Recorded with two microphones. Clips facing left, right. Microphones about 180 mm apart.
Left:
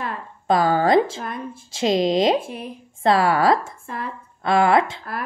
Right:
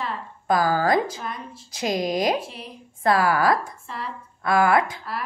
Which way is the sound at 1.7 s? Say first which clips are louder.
Left 5 dB; 25° left (ahead or behind).